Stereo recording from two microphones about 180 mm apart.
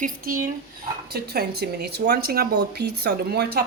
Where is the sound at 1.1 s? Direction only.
60° right (ahead or behind).